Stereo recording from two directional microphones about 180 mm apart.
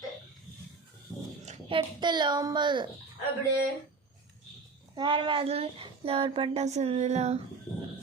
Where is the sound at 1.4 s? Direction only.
40° right (ahead or behind).